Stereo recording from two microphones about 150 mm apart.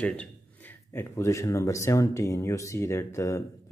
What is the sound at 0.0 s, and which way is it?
Speech, 10° left (ahead or behind).